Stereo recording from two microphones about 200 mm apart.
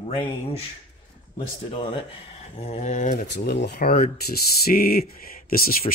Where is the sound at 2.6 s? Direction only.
35° left (ahead or behind).